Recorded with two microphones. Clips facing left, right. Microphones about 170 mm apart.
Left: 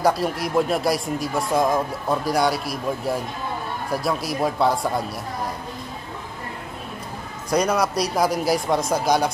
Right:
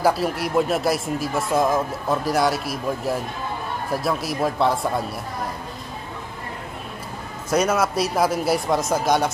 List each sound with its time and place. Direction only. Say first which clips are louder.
0.2 s speech: even; centre (ahead or behind)
7.4 s speech: even; 5° right (ahead or behind)